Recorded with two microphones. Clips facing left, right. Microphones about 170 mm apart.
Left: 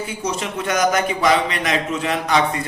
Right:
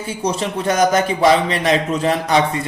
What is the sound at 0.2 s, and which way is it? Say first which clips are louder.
A man's voice: right 6 dB; 35° right (ahead or behind).